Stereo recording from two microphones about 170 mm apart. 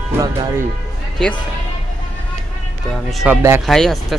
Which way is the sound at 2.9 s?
Centre (ahead or behind).